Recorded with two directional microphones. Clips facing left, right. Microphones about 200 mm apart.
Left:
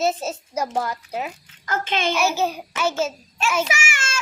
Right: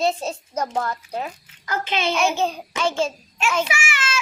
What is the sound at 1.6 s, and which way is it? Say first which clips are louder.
Speech: even; 50° left (ahead or behind).